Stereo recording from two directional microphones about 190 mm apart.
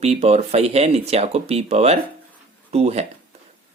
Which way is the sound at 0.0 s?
35° right (ahead or behind).